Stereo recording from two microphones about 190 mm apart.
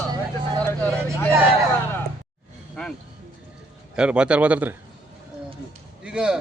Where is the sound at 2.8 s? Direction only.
5° left (ahead or behind).